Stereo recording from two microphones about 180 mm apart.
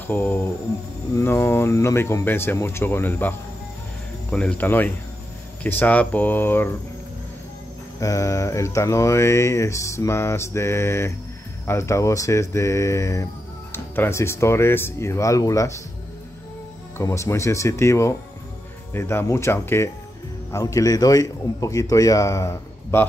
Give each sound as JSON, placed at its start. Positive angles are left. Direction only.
{"t": 0.0, "sound": "speech", "side_deg": 10}
{"t": 8.0, "sound": "speech", "side_deg": 15}
{"t": 17.0, "sound": "speech", "side_deg": 15}